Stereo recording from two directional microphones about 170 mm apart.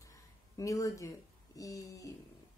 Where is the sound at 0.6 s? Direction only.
20° left (ahead or behind).